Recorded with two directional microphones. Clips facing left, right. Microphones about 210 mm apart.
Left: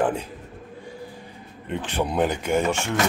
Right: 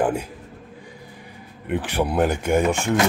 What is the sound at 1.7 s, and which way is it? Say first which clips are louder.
Speech: right 3 dB; 10° right (ahead or behind).